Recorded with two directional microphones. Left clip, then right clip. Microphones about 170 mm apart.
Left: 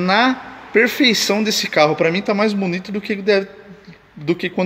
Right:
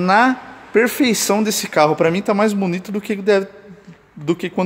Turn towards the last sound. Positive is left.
turn(degrees=-15)  # may be behind; listen again after turning